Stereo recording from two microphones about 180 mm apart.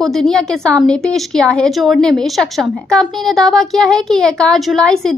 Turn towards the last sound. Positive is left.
turn(degrees=5)  # may be behind; listen again after turning